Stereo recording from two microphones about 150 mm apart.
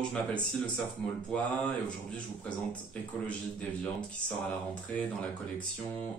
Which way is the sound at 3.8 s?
5° left (ahead or behind).